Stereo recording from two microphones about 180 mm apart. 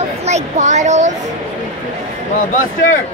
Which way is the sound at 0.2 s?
40° right (ahead or behind).